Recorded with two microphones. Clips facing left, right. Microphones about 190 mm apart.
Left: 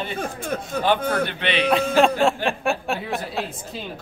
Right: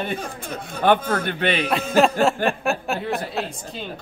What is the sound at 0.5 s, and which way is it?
Speech, 55° left (ahead or behind).